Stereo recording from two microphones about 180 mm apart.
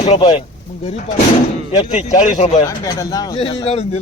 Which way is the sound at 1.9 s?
40° left (ahead or behind).